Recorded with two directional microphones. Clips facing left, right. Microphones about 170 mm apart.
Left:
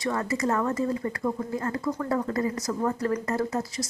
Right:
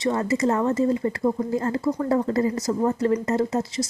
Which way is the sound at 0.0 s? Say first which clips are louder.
Right 5 dB; 25° right (ahead or behind).